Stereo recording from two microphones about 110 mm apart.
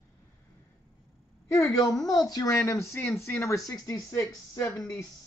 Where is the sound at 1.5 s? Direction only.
35° left (ahead or behind).